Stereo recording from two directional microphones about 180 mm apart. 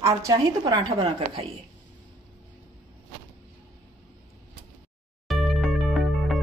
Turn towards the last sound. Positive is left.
turn(degrees=0)  # may be behind; listen again after turning